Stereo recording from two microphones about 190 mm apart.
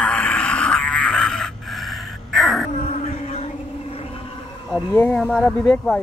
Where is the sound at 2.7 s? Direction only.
35° left (ahead or behind).